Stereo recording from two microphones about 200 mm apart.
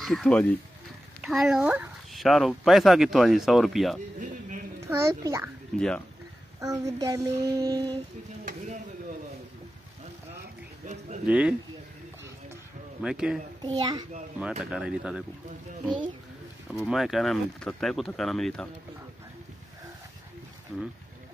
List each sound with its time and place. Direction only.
0.0 s speech: centre (ahead or behind)
4.2 s a sound: 40° right (ahead or behind)
4.7 s a child's voice: 15° right (ahead or behind)
5.8 s speech: 5° left (ahead or behind)
6.6 s child singing: 15° right (ahead or behind)
11.2 s child singing: 5° right (ahead or behind)
13.0 s speech: 5° right (ahead or behind)
13.6 s a child's voice: 20° right (ahead or behind)
14.6 s speech: 5° right (ahead or behind)
16.7 s speech: centre (ahead or behind)
20.7 s speech: 5° left (ahead or behind)